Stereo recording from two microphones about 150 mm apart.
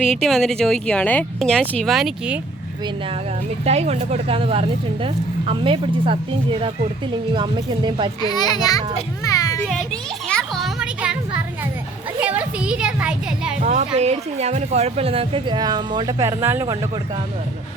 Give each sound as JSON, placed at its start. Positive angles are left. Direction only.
{"t": 0.0, "sound": "speech", "side_deg": 5}
{"t": 3.6, "sound": "speech", "side_deg": -45}
{"t": 8.2, "sound": "a child's voice", "side_deg": 25}
{"t": 9.2, "sound": "children playing", "side_deg": 25}
{"t": 9.6, "sound": "children playing", "side_deg": 5}
{"t": 12.2, "sound": "a woman's voice", "side_deg": -10}
{"t": 13.6, "sound": "speech", "side_deg": -50}